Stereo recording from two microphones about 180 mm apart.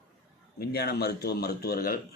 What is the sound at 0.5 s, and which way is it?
A man's voice, 60° left (ahead or behind).